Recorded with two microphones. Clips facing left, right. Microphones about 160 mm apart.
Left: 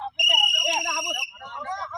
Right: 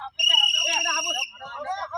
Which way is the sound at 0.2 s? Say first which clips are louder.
Left 4 dB; 5° left (ahead or behind).